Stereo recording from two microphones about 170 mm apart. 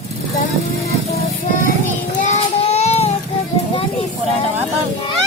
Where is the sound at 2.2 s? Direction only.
40° left (ahead or behind).